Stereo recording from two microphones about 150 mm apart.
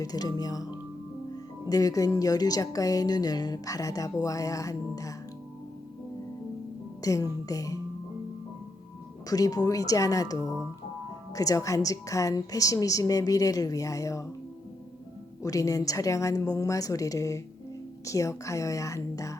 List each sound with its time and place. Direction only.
0.0 s a woman's voice: 25° left (ahead or behind)
1.7 s a woman's voice: 25° left (ahead or behind)
7.0 s a woman's voice: 20° left (ahead or behind)
9.3 s a woman's voice: 25° left (ahead or behind)
15.4 s a woman's voice: 20° left (ahead or behind)